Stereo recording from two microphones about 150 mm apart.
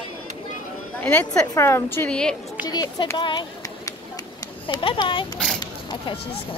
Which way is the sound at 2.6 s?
30° left (ahead or behind).